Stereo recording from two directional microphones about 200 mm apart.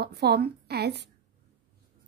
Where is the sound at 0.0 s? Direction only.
55° right (ahead or behind).